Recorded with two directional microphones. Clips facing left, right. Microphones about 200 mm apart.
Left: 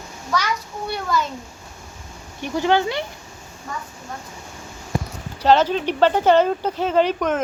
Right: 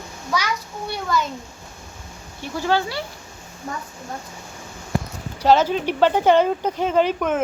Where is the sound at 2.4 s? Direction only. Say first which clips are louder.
Left 3 dB; 20° left (ahead or behind).